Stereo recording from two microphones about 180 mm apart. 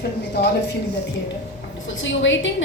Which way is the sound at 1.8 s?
90° left.